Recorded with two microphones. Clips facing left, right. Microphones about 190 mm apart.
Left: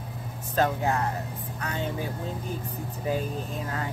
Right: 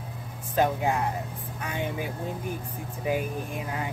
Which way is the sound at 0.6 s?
15° right (ahead or behind).